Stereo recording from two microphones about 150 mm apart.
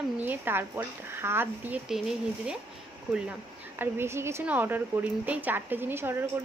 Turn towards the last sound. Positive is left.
turn(degrees=-15)  # may be behind; listen again after turning